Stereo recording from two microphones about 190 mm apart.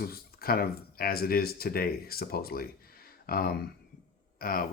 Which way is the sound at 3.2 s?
50° left (ahead or behind).